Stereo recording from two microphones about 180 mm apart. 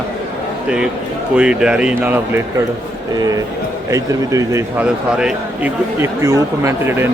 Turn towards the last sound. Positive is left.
turn(degrees=-15)  # may be behind; listen again after turning